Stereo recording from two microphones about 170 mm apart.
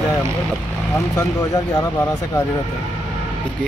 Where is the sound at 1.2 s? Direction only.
20° left (ahead or behind).